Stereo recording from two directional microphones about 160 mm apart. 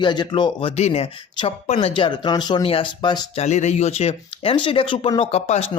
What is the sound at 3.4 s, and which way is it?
Speech, 45° left (ahead or behind).